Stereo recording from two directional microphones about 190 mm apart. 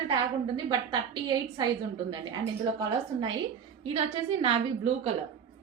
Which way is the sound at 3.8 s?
30° right (ahead or behind).